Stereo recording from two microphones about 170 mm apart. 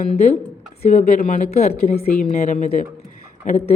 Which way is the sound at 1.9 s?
60° left (ahead or behind).